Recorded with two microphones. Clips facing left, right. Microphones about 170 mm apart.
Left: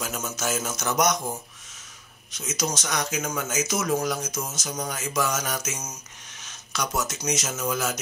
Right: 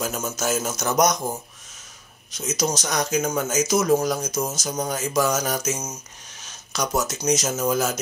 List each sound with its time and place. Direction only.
0.0 s a man's voice: 40° right (ahead or behind)
2.3 s a man's voice: 40° right (ahead or behind)